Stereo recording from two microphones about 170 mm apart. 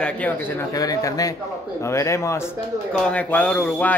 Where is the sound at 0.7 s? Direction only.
20° left (ahead or behind).